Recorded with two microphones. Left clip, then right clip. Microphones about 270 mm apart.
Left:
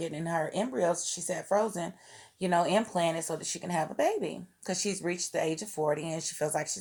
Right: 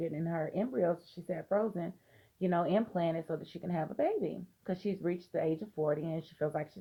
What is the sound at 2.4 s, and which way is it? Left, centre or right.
Speech, left.